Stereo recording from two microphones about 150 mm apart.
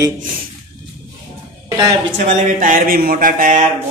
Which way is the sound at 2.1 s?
55° right (ahead or behind).